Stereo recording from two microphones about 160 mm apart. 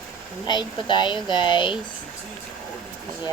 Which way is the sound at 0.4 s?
30° left (ahead or behind).